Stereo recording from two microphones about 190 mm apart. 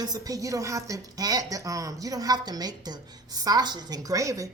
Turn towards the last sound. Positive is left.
turn(degrees=-15)  # may be behind; listen again after turning